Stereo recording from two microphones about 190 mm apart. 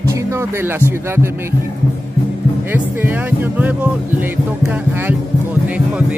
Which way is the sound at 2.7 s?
10° right (ahead or behind).